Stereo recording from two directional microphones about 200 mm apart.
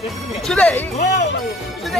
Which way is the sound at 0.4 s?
5° left (ahead or behind).